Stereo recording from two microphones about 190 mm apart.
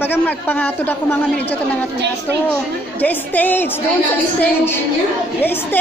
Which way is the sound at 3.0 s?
10° left (ahead or behind).